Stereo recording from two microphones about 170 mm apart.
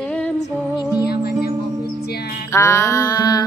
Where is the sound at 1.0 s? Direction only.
65° left (ahead or behind).